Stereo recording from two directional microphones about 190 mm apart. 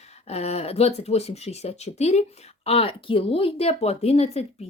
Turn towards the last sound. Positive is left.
turn(degrees=35)  # may be behind; listen again after turning